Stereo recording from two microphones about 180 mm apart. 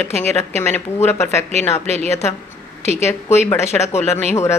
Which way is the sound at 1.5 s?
40° right (ahead or behind).